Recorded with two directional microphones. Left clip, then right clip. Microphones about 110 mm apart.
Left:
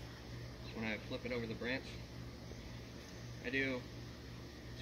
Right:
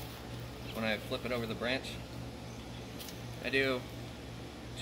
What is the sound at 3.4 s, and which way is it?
Speech, 30° right (ahead or behind).